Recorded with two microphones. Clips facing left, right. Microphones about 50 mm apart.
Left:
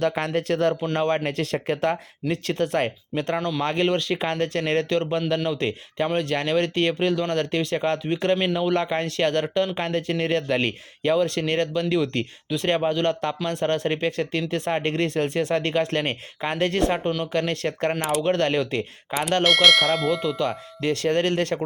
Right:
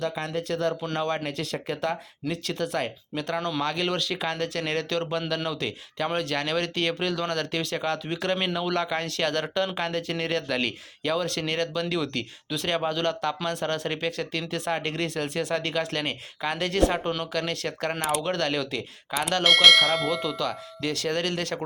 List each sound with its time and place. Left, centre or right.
0.0 s speech: left
0.9 s speech: left
17.9 s speech: centre
18.3 s speech: left
19.4 s speech: centre
20.4 s speech: left